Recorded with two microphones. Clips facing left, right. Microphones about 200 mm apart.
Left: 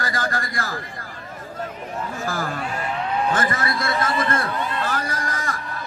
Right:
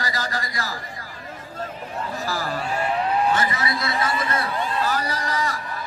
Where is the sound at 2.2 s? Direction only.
50° left (ahead or behind).